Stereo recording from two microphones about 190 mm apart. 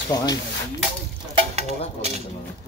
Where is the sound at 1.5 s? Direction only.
35° right (ahead or behind).